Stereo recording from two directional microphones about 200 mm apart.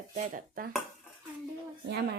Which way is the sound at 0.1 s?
45° right (ahead or behind).